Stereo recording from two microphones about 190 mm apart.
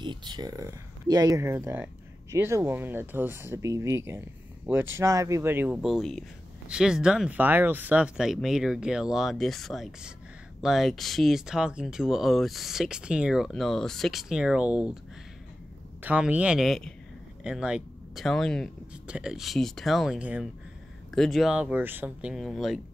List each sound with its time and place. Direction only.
0.0 s speech: 25° right (ahead or behind); by 14.9 s 5° right (ahead or behind)
16.0 s speech: 5° right (ahead or behind)